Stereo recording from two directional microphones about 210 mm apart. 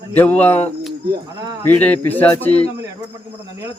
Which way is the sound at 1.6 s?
10° left (ahead or behind).